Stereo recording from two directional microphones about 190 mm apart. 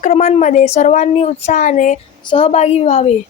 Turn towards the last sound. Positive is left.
turn(degrees=35)  # may be behind; listen again after turning